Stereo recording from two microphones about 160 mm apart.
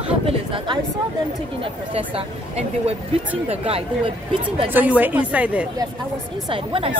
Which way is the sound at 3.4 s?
35° right (ahead or behind).